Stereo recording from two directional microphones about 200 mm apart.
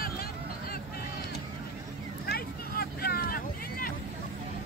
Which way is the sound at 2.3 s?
50° left (ahead or behind).